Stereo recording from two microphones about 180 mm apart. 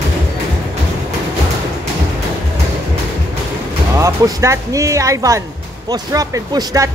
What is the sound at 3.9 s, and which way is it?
Speech, 15° right (ahead or behind).